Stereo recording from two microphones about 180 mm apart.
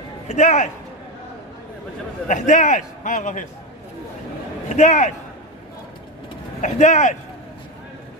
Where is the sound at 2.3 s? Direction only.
45° left (ahead or behind).